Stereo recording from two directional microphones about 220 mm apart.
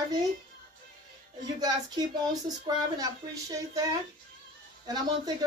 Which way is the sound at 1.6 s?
20° right (ahead or behind).